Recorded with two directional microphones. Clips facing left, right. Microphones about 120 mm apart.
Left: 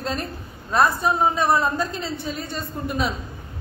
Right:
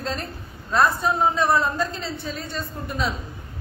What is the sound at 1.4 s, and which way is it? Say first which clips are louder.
A man's voice: left 1 dB; 10° left (ahead or behind).